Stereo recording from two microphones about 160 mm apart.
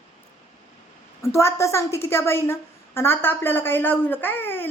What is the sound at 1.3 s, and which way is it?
A woman's voice, 15° left (ahead or behind).